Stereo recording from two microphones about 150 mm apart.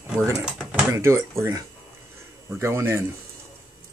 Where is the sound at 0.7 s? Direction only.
10° right (ahead or behind).